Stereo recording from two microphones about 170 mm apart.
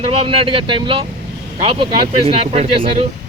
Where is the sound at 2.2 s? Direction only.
35° right (ahead or behind).